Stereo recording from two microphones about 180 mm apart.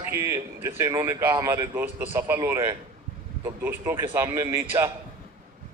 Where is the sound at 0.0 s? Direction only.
15° right (ahead or behind).